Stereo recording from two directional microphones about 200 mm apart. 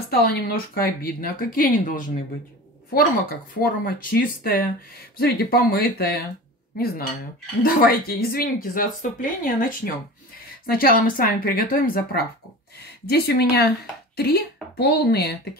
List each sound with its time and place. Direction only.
0.1 s speech: 50° left (ahead or behind)
7.6 s speech: 45° left (ahead or behind)